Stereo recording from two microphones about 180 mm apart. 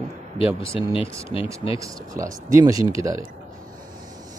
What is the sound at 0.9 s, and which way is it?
Speech, 30° left (ahead or behind).